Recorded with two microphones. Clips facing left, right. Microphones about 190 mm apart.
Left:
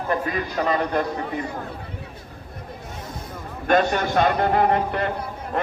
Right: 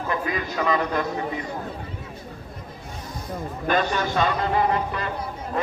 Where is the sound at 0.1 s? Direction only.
45° left (ahead or behind).